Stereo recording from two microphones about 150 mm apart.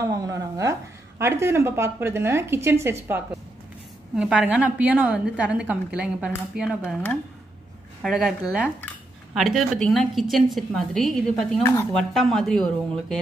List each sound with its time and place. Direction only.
0.0 s a woman's voice: 20° right (ahead or behind)
4.1 s a woman's voice: 5° right (ahead or behind)
8.0 s a woman's voice: 5° right (ahead or behind)